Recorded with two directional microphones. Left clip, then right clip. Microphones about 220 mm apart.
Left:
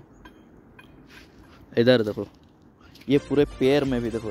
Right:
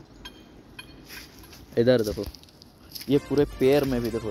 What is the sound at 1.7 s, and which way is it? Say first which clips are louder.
Speech: left 2 dB; 25° left (ahead or behind).